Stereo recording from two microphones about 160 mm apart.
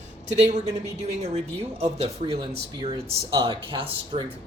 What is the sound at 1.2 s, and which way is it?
Speech, 45° right (ahead or behind).